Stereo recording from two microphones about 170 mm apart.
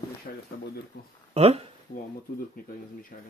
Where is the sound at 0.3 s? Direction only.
50° left (ahead or behind).